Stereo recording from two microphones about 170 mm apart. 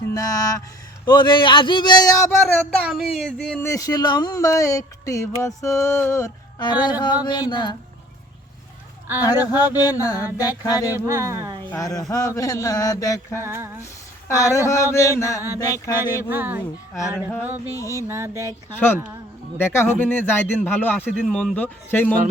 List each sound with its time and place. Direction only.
0.1 s speech: 20° left (ahead or behind)
2.8 s speech: centre (ahead or behind)
3.6 s speech: 20° left (ahead or behind)
9.4 s a sound: 10° right (ahead or behind)
10.0 s speech: 20° left (ahead or behind)
10.9 s speech: 20° right (ahead or behind)
11.7 s speech: 20° left (ahead or behind)
13.4 s a sound: 15° right (ahead or behind)
14.3 s speech: 20° left (ahead or behind)
16.3 s a sound: 10° right (ahead or behind)
17.7 s speech: 20° left (ahead or behind)
18.1 s a sound: 15° right (ahead or behind)
19.5 s speech: 15° left (ahead or behind)